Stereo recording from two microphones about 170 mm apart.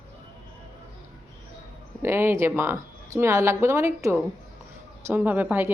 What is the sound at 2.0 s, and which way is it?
A woman's voice, 15° right (ahead or behind).